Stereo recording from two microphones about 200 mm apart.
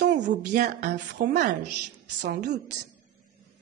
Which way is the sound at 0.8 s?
55° right (ahead or behind).